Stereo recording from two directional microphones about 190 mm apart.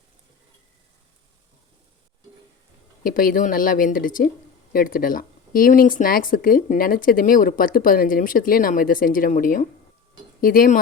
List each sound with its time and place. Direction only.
3.0 s speech: 50° left (ahead or behind)